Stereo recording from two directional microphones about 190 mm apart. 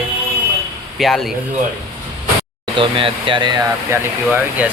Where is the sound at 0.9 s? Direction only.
Centre (ahead or behind).